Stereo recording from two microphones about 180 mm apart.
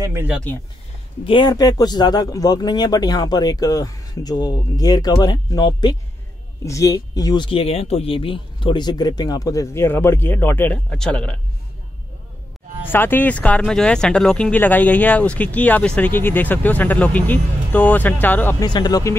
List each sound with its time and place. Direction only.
0.0 s speech: 15° right (ahead or behind)
1.2 s speech: 25° left (ahead or behind); by 11.3 s 5° left (ahead or behind)
12.8 s speech: 10° left (ahead or behind)
18.7 s speech: 25° left (ahead or behind)